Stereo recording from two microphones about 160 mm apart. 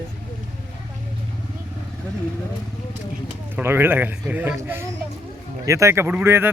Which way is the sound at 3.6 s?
15° right (ahead or behind).